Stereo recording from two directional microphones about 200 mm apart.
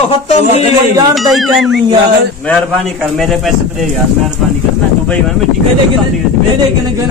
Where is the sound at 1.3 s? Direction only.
Centre (ahead or behind).